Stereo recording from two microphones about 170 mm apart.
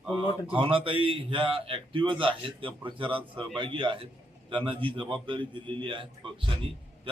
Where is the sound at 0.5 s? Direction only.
30° right (ahead or behind).